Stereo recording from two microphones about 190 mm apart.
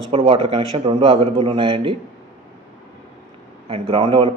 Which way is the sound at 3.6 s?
30° right (ahead or behind).